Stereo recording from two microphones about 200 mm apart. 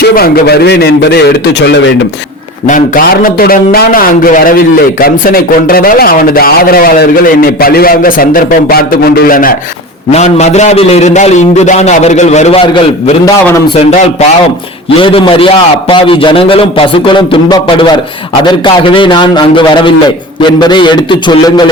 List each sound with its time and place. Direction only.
0.0 s a man's voice: 50° left (ahead or behind)
2.6 s a man's voice: 45° left (ahead or behind)
13.2 s a man's voice: 20° left (ahead or behind)
15.0 s a man's voice: 25° left (ahead or behind)